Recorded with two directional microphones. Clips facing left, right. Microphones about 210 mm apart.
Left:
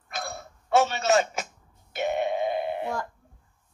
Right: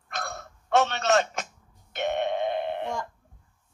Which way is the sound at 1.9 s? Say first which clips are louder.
Left 1 dB; 5° left (ahead or behind).